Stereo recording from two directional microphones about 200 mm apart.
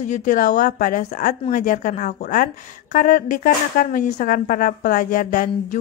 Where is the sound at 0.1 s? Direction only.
40° left (ahead or behind).